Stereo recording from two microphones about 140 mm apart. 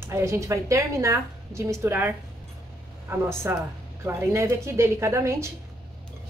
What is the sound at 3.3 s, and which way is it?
A woman's voice, 20° right (ahead or behind).